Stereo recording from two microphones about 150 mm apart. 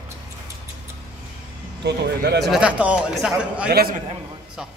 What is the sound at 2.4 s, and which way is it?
A man's voice, 5° right (ahead or behind).